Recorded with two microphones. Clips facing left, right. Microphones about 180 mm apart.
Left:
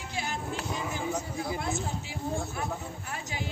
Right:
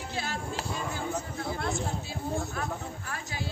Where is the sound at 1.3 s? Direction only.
10° left (ahead or behind).